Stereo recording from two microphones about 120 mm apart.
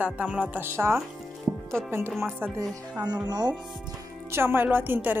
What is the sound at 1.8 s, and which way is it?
Music, 5° left (ahead or behind).